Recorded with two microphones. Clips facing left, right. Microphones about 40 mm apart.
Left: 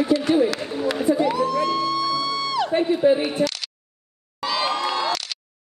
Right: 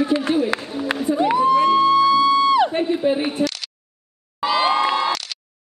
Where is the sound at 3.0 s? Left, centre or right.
Centre.